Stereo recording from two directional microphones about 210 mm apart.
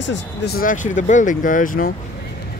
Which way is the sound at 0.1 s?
40° left (ahead or behind).